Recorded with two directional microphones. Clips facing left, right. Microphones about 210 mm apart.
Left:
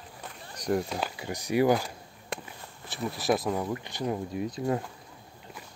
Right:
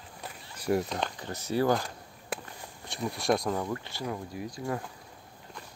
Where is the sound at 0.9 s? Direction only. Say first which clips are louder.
Left 1 dB; 10° left (ahead or behind).